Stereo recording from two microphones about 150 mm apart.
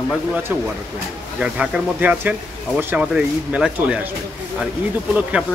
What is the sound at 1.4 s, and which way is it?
Speech, 5° right (ahead or behind).